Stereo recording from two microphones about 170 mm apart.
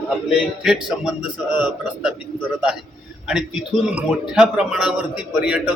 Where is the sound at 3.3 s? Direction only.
5° right (ahead or behind).